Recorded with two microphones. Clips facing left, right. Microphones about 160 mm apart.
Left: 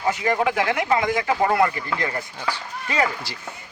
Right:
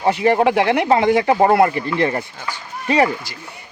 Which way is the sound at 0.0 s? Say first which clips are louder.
Right 6 dB; 30° right (ahead or behind).